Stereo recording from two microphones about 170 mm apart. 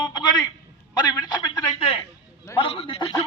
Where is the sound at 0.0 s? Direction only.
25° left (ahead or behind).